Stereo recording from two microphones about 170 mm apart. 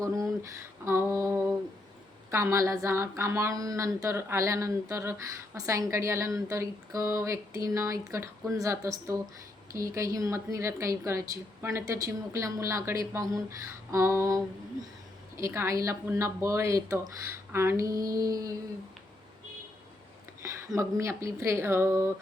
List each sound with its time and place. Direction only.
0.9 s female singing: 15° right (ahead or behind)
2.3 s a woman's voice: 20° right (ahead or behind)
20.7 s a woman's voice: 15° right (ahead or behind)